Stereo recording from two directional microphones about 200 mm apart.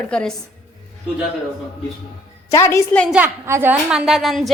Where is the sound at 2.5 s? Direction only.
15° left (ahead or behind).